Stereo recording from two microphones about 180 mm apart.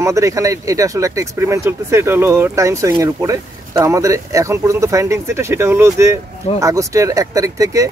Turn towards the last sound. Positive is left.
turn(degrees=-20)  # may be behind; listen again after turning